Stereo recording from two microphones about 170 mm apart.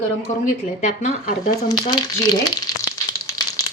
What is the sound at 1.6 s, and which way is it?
Speech, 25° left (ahead or behind).